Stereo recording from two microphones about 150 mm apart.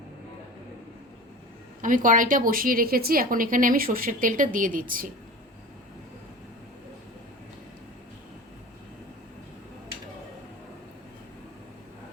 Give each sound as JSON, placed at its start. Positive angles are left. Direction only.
{"t": 1.8, "sound": "a woman's voice", "side_deg": -60}